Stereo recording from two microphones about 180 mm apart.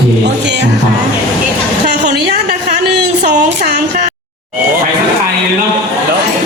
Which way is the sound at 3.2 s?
40° right (ahead or behind).